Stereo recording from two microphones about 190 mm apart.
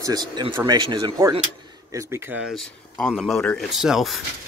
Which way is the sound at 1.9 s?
10° right (ahead or behind).